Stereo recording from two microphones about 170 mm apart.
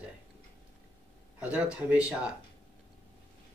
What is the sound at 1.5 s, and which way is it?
Speech, 5° right (ahead or behind).